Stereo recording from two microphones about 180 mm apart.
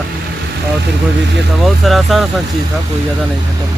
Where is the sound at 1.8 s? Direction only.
Centre (ahead or behind).